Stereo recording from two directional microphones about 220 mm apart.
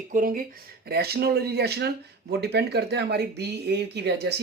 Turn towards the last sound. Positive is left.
turn(degrees=-50)  # may be behind; listen again after turning